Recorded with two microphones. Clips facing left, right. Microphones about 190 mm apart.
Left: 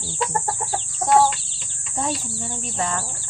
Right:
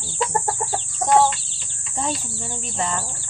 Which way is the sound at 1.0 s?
Centre (ahead or behind).